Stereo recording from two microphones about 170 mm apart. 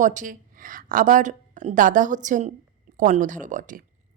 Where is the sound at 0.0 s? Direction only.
50° right (ahead or behind).